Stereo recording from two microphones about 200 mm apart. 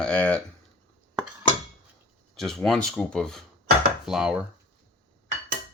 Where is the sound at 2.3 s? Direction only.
Centre (ahead or behind).